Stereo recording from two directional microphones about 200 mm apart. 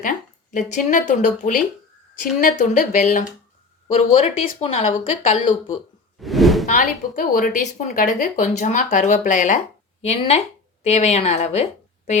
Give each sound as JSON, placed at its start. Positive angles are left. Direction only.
{"t": 0.0, "sound": "a woman's voice", "side_deg": 40}
{"t": 6.1, "sound": "whoosh", "side_deg": 0}
{"t": 6.7, "sound": "a woman's voice", "side_deg": 40}